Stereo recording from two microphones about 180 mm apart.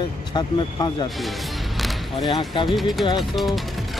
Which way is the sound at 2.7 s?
Centre (ahead or behind).